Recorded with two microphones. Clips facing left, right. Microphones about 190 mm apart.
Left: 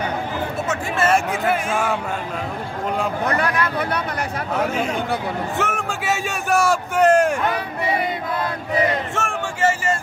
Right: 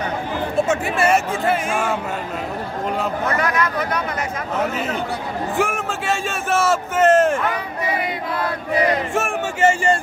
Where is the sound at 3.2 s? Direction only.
35° left (ahead or behind).